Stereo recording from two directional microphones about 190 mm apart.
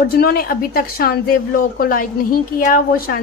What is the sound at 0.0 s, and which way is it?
A woman's voice, 50° left (ahead or behind).